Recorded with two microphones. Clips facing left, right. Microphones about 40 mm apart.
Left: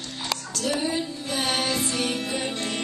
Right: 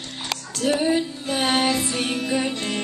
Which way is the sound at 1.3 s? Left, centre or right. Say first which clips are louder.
Right 5 dB; right.